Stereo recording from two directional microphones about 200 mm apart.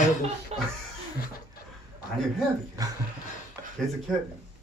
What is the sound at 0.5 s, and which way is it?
Speech, 30° right (ahead or behind).